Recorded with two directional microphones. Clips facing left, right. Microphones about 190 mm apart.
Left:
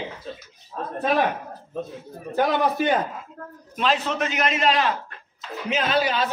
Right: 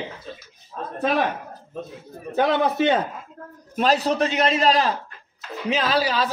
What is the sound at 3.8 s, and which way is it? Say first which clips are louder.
A man's voice: right 4 dB; 40° right (ahead or behind).